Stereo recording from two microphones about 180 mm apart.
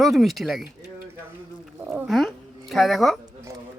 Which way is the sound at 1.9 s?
5° right (ahead or behind).